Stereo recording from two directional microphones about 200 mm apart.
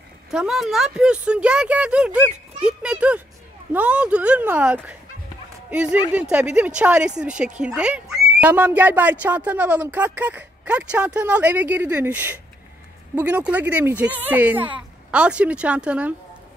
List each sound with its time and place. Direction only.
0.3 s speech: centre (ahead or behind)